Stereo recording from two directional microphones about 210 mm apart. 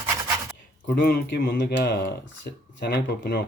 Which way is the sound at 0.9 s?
50° left (ahead or behind).